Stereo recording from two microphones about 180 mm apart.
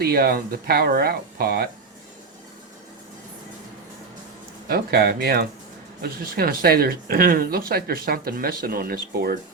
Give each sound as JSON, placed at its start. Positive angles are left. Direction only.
{"t": 0.0, "sound": "speech", "side_deg": -60}
{"t": 4.7, "sound": "speech", "side_deg": -60}